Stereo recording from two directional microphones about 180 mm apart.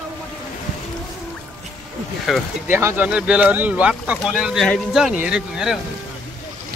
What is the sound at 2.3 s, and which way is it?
Speech, centre (ahead or behind).